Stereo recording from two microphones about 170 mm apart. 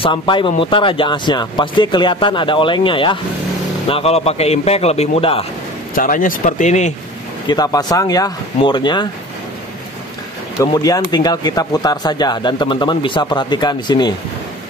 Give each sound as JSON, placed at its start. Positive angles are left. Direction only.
{"t": 0.0, "sound": "speech", "side_deg": 30}
{"t": 5.9, "sound": "speech", "side_deg": 55}
{"t": 7.4, "sound": "speech", "side_deg": 25}
{"t": 10.6, "sound": "speech", "side_deg": 20}